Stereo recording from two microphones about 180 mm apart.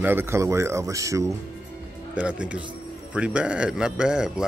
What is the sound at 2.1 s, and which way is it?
A man's voice, 5° right (ahead or behind).